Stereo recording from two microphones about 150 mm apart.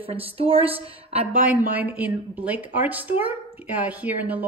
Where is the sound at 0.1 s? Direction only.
40° right (ahead or behind).